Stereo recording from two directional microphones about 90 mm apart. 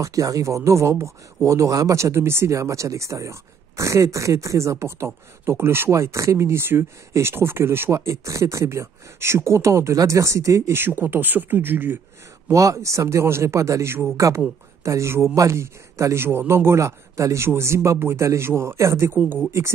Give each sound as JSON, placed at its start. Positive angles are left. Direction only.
{"t": 0.0, "sound": "speech", "side_deg": -40}
{"t": 12.4, "sound": "speech", "side_deg": -40}
{"t": 14.1, "sound": "a man's voice", "side_deg": -35}